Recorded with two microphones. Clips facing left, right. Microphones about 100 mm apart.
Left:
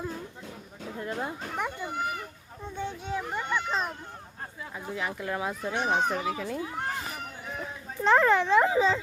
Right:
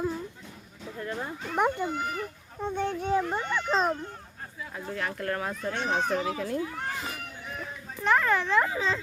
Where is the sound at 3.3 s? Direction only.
35° right (ahead or behind).